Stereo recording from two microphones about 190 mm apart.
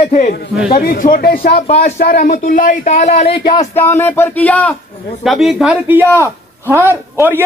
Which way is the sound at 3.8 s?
10° left (ahead or behind).